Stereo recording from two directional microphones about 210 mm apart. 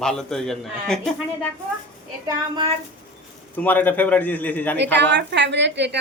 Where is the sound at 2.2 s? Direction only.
25° right (ahead or behind).